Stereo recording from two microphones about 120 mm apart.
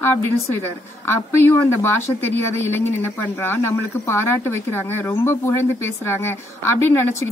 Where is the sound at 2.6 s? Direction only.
20° left (ahead or behind).